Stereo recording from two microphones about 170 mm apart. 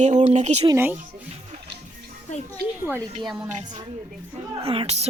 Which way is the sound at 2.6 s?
65° right (ahead or behind).